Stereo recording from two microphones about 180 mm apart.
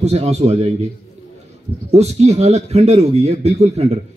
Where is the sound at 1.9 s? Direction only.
35° right (ahead or behind).